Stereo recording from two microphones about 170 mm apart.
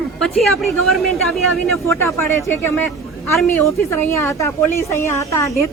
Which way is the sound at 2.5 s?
10° left (ahead or behind).